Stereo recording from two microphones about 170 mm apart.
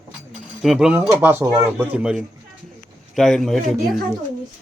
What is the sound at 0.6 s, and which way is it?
A man's voice, centre (ahead or behind).